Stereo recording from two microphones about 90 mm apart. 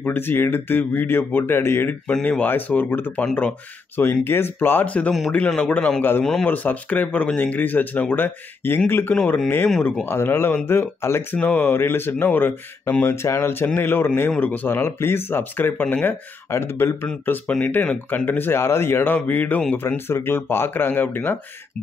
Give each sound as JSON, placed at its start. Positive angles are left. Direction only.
{"t": 0.0, "sound": "speech", "side_deg": 25}
{"t": 2.0, "sound": "a man's voice", "side_deg": 15}